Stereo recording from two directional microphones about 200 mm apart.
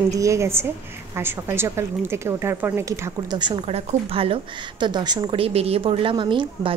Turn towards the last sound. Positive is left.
turn(degrees=-25)  # may be behind; listen again after turning